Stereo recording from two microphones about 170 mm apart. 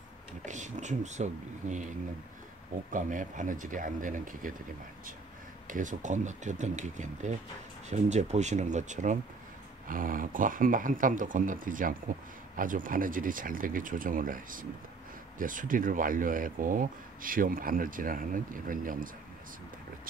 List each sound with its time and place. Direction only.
0.5 s speech: 45° right (ahead or behind)
2.9 s speech: 50° right (ahead or behind)
5.7 s speech: 50° right (ahead or behind)